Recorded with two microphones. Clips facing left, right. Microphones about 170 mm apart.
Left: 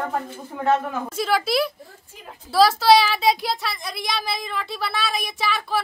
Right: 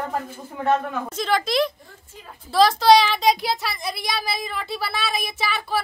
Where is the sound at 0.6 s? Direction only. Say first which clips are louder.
Even; 5° left (ahead or behind).